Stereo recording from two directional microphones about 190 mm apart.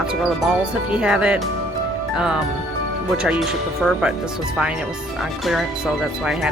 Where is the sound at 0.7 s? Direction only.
5° right (ahead or behind).